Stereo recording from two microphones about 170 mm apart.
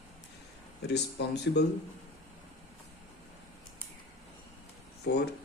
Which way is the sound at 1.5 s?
90° left.